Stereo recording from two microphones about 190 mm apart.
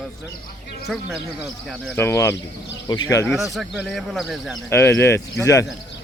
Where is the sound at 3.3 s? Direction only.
Centre (ahead or behind).